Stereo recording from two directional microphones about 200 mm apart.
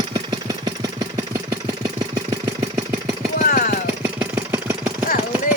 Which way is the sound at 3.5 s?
40° left (ahead or behind).